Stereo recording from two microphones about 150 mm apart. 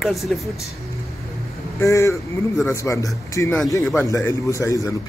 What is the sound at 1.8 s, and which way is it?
Speech, 20° left (ahead or behind).